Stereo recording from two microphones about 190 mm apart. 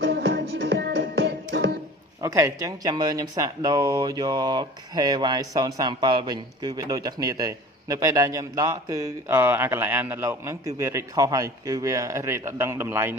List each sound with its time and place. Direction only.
0.1 s music: 55° right (ahead or behind)
2.2 s a man's voice: 15° right (ahead or behind)